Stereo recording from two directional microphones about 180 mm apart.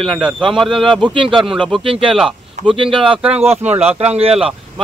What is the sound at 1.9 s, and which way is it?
Speech, 30° right (ahead or behind).